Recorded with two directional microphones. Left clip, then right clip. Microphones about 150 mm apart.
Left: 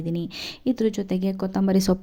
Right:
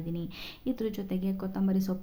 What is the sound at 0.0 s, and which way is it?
Speech, 50° left (ahead or behind).